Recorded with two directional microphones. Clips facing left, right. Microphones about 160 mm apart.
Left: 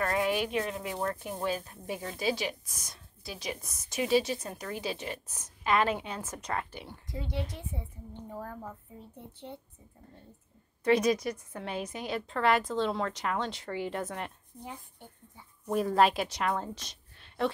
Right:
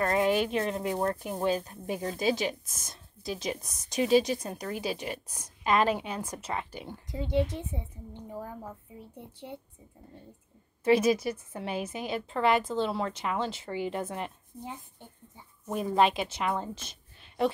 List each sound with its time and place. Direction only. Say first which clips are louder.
0.0 s a sound: right 3 dB; 25° right (ahead or behind)
0.5 s a woman's voice: right 3 dB; 35° right (ahead or behind); by 8.5 s 10° right (ahead or behind)
10.8 s a woman's voice: right 2 dB; 5° right (ahead or behind)
15.7 s a woman's voice: even; centre (ahead or behind)